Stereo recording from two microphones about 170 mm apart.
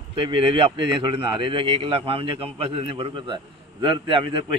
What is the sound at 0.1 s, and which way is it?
A man's voice, 30° right (ahead or behind).